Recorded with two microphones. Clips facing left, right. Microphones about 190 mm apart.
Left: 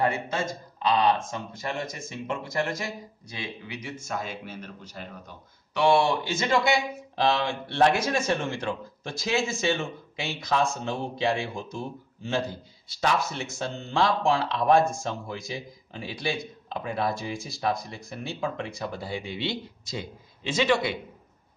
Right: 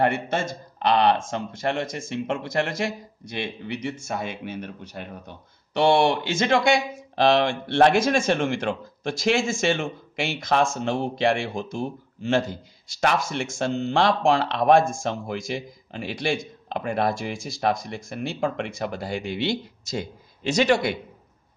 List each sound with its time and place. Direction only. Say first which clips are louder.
0.8 s speech: right 3 dB; 65° right (ahead or behind)
6.4 s speech: right 4 dB; 85° right
19.8 s a man's voice: right 5 dB; 45° right (ahead or behind)